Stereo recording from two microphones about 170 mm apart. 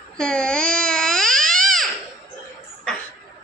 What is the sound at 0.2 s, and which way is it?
Babbling, 5° left (ahead or behind).